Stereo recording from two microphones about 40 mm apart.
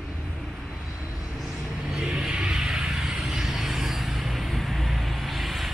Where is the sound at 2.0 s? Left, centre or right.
Centre.